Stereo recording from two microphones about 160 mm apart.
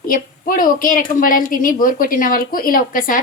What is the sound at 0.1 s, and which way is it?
A woman's voice, 60° left (ahead or behind).